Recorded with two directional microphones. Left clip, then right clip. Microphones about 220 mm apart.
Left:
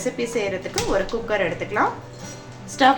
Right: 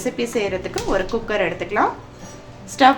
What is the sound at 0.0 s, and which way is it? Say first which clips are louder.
A woman's voice: right 2 dB; 25° right (ahead or behind).